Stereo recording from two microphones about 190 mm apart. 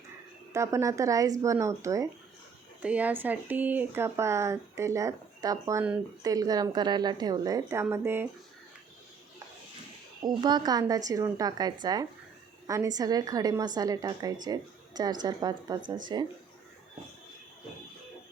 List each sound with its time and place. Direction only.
0.5 s a woman's voice: 15° right (ahead or behind)
10.2 s a woman's voice: 20° right (ahead or behind)